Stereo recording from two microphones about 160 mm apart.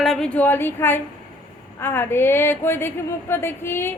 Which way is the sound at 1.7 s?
15° left (ahead or behind).